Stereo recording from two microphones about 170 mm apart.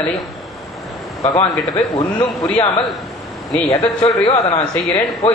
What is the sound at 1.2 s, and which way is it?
A man's voice, 25° left (ahead or behind).